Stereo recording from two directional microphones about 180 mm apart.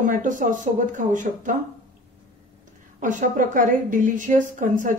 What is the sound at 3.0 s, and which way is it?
A woman's voice, 45° right (ahead or behind).